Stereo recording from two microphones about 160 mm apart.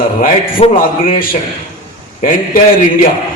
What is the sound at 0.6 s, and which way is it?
Speech, 45° left (ahead or behind).